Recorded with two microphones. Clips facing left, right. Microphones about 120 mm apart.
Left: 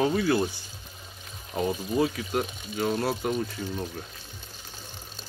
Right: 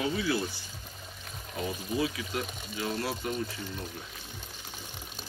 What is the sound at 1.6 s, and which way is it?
Speech, 45° left (ahead or behind).